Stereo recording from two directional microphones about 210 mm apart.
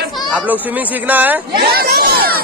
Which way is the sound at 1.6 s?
50° right (ahead or behind).